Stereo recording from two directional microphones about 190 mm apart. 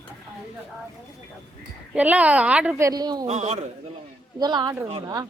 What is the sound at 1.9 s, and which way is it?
Speech, 5° right (ahead or behind).